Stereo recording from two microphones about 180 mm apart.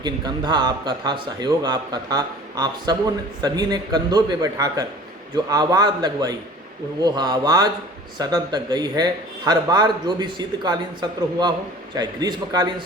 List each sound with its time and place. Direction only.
0.0 s a man's voice: 25° right (ahead or behind)